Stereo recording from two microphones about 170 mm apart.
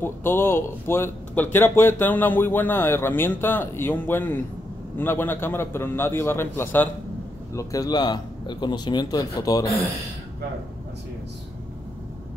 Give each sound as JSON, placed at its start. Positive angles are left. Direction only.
{"t": 0.0, "sound": "a man's voice", "side_deg": 15}